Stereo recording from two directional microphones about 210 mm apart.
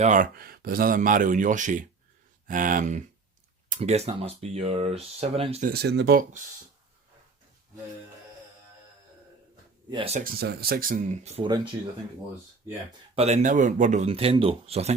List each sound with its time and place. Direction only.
0.0 s speech: 35° right (ahead or behind)
5.6 s speech: 50° right (ahead or behind)
9.9 s speech: 30° right (ahead or behind)
10.2 s speech: 50° right (ahead or behind); by 11.6 s 25° right (ahead or behind)
13.1 s speech: 30° right (ahead or behind)